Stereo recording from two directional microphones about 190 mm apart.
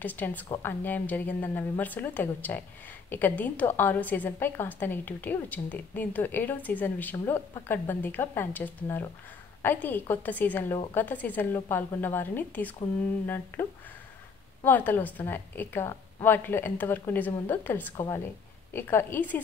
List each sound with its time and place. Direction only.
0.0 s a woman's voice: 10° left (ahead or behind)